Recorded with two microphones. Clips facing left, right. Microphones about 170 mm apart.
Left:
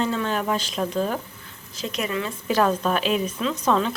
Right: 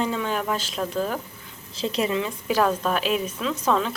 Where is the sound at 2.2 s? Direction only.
10° right (ahead or behind).